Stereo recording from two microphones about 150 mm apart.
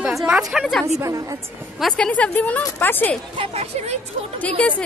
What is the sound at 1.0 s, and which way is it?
Speech, 20° right (ahead or behind).